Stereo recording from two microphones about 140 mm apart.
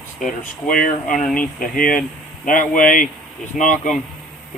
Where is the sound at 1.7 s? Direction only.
80° left.